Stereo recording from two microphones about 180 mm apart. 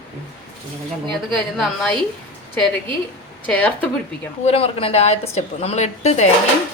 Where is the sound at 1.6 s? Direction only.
Centre (ahead or behind).